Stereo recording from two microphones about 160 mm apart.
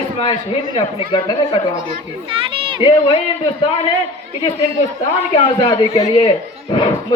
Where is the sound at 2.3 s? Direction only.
35° right (ahead or behind).